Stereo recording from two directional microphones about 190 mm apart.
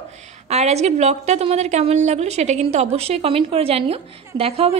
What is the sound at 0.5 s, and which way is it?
A woman's voice, 35° right (ahead or behind).